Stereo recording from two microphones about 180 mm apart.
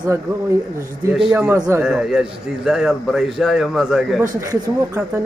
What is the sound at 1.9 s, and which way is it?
A man's voice, centre (ahead or behind).